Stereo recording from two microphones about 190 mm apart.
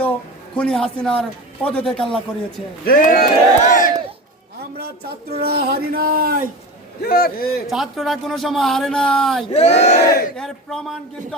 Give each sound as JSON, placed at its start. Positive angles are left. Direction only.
{"t": 0.5, "sound": "a man's voice", "side_deg": 5}
{"t": 2.8, "sound": "speech", "side_deg": 45}
{"t": 5.4, "sound": "speech", "side_deg": -55}
{"t": 7.0, "sound": "speech", "side_deg": 50}
{"t": 7.7, "sound": "a man's voice", "side_deg": 0}
{"t": 9.5, "sound": "speech", "side_deg": 35}
{"t": 10.3, "sound": "a man's voice", "side_deg": 5}